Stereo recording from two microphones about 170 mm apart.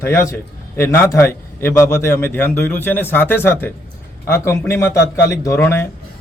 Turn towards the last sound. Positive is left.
turn(degrees=15)  # may be behind; listen again after turning